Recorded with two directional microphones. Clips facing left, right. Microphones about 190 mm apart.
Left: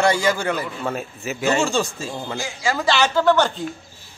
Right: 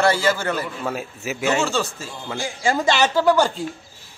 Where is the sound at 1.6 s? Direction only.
15° left (ahead or behind).